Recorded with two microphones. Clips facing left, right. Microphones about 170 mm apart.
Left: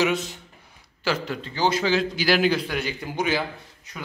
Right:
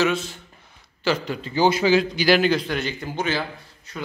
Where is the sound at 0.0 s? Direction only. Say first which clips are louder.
Right 1 dB; 15° left (ahead or behind).